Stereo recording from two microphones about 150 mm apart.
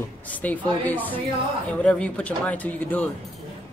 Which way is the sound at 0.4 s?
10° left (ahead or behind).